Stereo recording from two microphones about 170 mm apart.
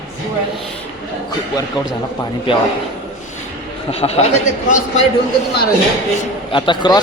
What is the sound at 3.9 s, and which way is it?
A man's voice, 35° left (ahead or behind).